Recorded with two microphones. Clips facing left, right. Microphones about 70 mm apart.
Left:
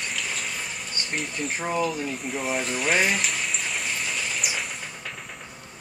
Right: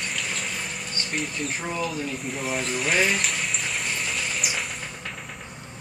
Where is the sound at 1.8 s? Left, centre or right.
Centre.